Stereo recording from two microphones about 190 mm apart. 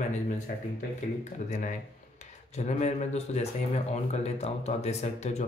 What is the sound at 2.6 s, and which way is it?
Speech, 40° left (ahead or behind).